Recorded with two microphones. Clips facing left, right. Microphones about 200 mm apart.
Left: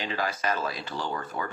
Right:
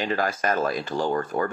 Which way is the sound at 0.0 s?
50° right (ahead or behind).